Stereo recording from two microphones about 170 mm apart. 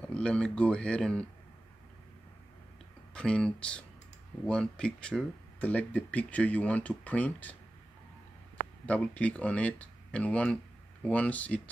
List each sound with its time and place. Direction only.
0.0 s speech: 5° left (ahead or behind)
3.2 s speech: 5° left (ahead or behind)
8.8 s speech: 10° left (ahead or behind)